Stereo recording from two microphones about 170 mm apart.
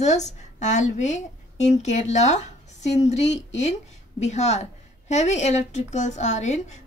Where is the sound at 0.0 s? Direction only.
45° left (ahead or behind).